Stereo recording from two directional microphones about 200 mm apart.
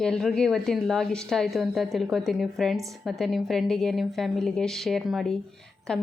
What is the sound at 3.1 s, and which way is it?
A woman's voice, centre (ahead or behind).